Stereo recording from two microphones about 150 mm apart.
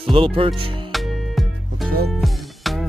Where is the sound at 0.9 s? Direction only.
Centre (ahead or behind).